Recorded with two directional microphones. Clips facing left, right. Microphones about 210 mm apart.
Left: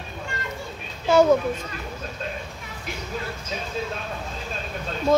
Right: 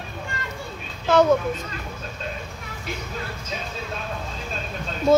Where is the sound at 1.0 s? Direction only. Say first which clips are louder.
Left 1 dB; 10° left (ahead or behind).